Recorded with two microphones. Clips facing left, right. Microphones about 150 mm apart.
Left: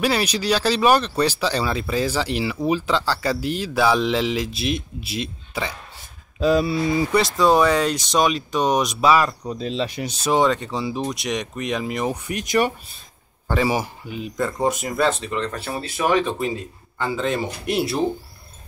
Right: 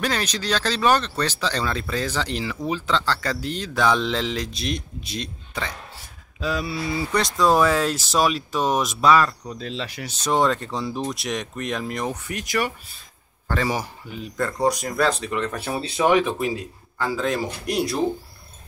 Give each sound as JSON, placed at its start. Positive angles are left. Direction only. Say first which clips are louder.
{"t": 0.0, "sound": "speech", "louder": "left 4 dB", "side_deg": 10}
{"t": 6.4, "sound": "speech", "louder": "left 8 dB", "side_deg": 25}
{"t": 7.1, "sound": "speech", "louder": "even", "side_deg": 5}
{"t": 9.4, "sound": "speech", "louder": "left 6 dB", "side_deg": 25}
{"t": 10.2, "sound": "speech", "louder": "left 2 dB", "side_deg": 0}
{"t": 12.3, "sound": "speech", "louder": "left 7 dB", "side_deg": 20}
{"t": 13.5, "sound": "speech", "louder": "left 3 dB", "side_deg": 10}
{"t": 15.6, "sound": "speech", "louder": "right 2 dB", "side_deg": -15}
{"t": 16.3, "sound": "speech", "louder": "even", "side_deg": 0}